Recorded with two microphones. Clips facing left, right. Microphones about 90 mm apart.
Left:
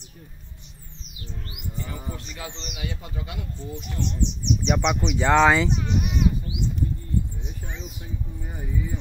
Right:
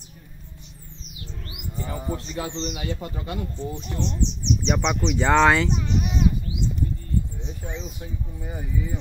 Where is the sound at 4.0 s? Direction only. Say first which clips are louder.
Even; 30° right (ahead or behind).